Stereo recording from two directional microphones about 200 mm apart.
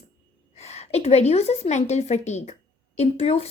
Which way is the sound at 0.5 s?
35° left (ahead or behind).